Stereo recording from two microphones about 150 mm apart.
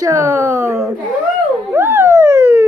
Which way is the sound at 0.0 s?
20° right (ahead or behind).